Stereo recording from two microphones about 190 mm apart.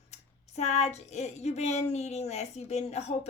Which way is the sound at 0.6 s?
35° left (ahead or behind).